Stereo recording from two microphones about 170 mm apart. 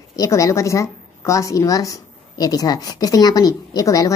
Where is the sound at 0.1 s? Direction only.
20° left (ahead or behind).